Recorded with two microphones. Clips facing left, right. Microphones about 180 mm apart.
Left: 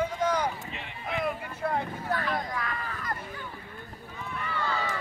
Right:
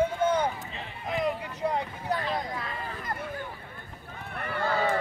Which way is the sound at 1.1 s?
20° right (ahead or behind).